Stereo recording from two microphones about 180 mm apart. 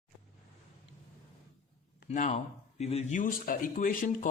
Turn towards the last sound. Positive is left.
turn(degrees=45)  # may be behind; listen again after turning